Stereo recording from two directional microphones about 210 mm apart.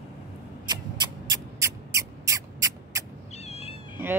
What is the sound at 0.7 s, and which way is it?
Rodents, 20° right (ahead or behind).